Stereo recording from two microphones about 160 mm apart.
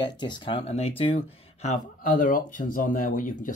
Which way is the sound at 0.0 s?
25° left (ahead or behind).